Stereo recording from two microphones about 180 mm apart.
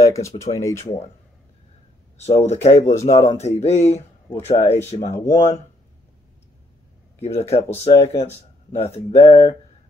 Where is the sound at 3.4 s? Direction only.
35° left (ahead or behind).